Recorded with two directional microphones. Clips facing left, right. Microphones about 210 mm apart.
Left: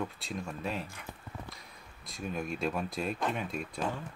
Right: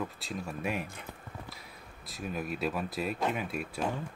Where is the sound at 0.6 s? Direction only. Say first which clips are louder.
Right 3 dB; 15° right (ahead or behind).